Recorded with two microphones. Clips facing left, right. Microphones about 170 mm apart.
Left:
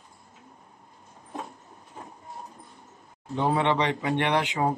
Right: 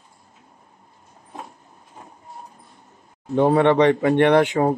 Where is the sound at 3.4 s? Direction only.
55° right (ahead or behind).